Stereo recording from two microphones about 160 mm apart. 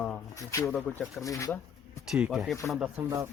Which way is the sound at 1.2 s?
20° left (ahead or behind).